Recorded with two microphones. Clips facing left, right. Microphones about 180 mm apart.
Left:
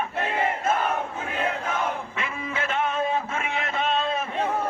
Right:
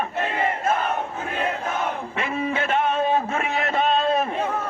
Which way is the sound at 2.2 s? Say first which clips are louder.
Right 6 dB; 35° right (ahead or behind).